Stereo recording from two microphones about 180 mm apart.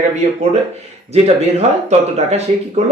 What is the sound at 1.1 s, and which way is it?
Speech, 40° right (ahead or behind).